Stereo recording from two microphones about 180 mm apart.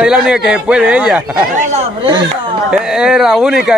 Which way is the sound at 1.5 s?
40° right (ahead or behind).